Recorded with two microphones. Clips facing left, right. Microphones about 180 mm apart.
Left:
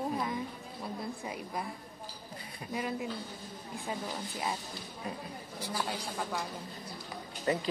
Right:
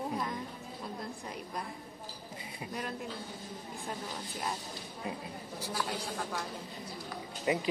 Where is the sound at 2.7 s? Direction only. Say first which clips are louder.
Left 5 dB; 5° left (ahead or behind).